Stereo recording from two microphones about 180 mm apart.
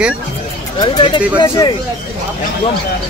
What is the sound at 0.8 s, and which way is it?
Speech, 25° left (ahead or behind).